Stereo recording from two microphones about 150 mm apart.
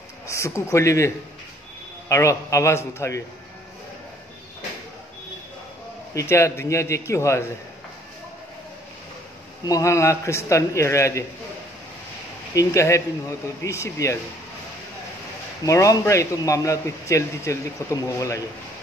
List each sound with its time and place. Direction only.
0.3 s a man's voice: 20° left (ahead or behind)
6.1 s a man's voice: 20° left (ahead or behind)
9.7 s a man's voice: 20° left (ahead or behind)
12.5 s a man's voice: 20° left (ahead or behind)
15.6 s a man's voice: 20° left (ahead or behind)